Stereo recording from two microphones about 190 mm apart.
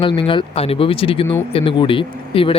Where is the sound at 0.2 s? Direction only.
25° left (ahead or behind).